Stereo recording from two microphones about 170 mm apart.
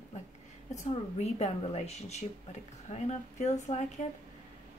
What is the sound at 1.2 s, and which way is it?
A woman's voice, 35° left (ahead or behind).